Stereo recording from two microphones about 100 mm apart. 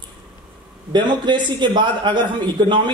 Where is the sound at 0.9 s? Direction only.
50° right (ahead or behind).